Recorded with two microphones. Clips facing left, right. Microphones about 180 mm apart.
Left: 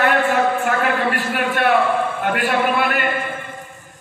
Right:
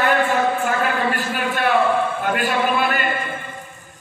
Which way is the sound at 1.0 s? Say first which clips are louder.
Left 2 dB; 65° left (ahead or behind).